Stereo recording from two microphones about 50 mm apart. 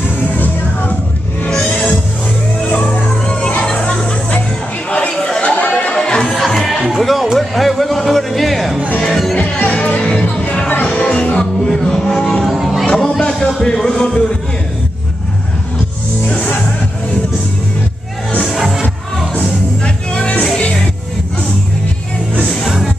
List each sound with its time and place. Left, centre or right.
1.7 s music: left
5.1 s chatter: centre
5.6 s chatter: left
5.9 s chatter: centre
6.3 s music: centre
6.7 s music: centre
9.7 s music: left
12.5 s music: centre
12.8 s music: centre
13.2 s a sound: centre
13.6 s music: centre
16.3 s music: left
18.5 s music: centre
19.8 s music: left